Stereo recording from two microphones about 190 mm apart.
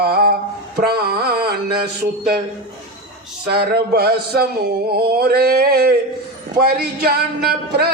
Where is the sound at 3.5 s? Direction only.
55° right (ahead or behind).